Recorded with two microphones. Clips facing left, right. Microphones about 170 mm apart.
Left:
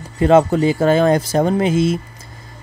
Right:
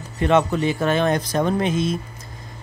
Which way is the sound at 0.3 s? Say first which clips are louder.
Left 6 dB; 30° left (ahead or behind).